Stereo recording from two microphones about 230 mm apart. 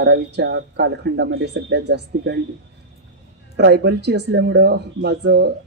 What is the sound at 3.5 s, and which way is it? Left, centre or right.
Speech, right.